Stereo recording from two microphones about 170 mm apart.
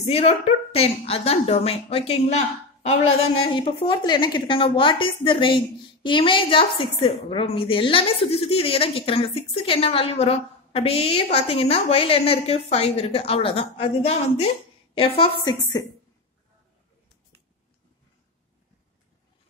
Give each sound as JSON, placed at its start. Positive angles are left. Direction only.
{"t": 0.0, "sound": "a woman's voice", "side_deg": 40}